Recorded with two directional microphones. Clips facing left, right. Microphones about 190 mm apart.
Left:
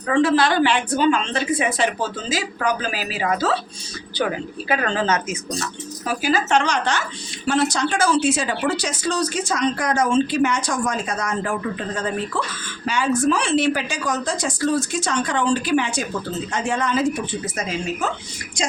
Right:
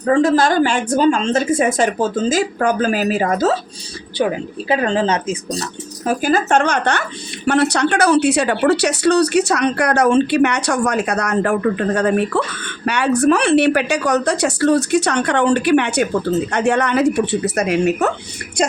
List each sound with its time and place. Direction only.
0.0 s a woman's voice: 45° right (ahead or behind)
4.2 s speech: 20° right (ahead or behind)
6.1 s a woman's voice: 50° right (ahead or behind); by 18.1 s 70° right (ahead or behind)